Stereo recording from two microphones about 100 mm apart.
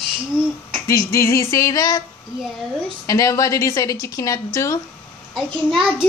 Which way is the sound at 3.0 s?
35° left (ahead or behind).